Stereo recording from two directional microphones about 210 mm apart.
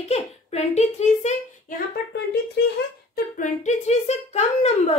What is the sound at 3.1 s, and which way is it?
Speech, 35° left (ahead or behind).